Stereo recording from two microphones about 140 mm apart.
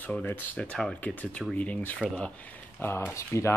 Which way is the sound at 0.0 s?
10° left (ahead or behind).